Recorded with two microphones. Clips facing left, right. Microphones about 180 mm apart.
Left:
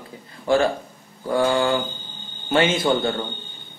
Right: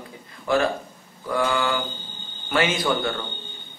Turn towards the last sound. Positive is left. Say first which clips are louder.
# left 3 dB
turn(degrees=25)  # may be behind; listen again after turning